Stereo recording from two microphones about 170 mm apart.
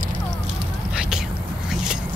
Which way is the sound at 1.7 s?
5° right (ahead or behind).